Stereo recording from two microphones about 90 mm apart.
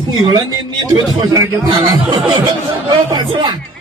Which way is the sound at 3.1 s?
60° right (ahead or behind).